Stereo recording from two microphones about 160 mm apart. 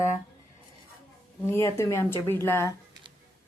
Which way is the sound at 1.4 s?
15° left (ahead or behind).